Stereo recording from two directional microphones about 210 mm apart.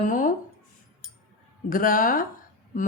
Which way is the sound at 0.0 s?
40° left (ahead or behind).